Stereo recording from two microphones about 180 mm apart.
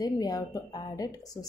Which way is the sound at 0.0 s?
20° left (ahead or behind).